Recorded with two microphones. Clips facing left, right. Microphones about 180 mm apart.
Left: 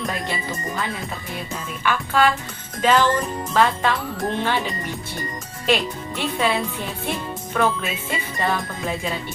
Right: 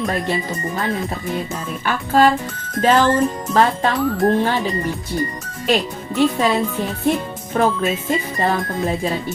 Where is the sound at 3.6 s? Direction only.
40° right (ahead or behind).